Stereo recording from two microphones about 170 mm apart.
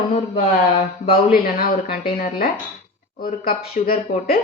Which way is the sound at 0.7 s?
35° left (ahead or behind).